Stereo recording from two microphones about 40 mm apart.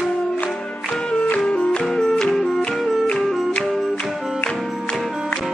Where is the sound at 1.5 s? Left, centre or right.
Left.